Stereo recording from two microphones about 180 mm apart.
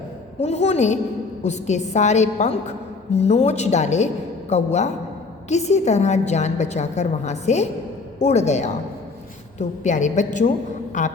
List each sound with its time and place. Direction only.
0.4 s a woman's voice: 35° left (ahead or behind)